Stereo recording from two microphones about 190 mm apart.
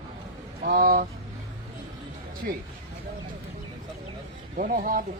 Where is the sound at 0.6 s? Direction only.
50° right (ahead or behind).